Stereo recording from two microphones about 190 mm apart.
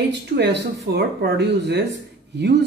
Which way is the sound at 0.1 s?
65° right (ahead or behind).